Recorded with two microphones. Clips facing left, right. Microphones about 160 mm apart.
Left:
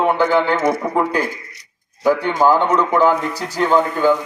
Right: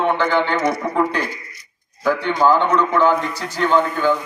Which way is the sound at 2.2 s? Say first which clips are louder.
Left 1 dB; 45° left (ahead or behind).